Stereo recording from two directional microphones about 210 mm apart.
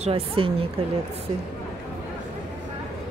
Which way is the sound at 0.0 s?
25° right (ahead or behind).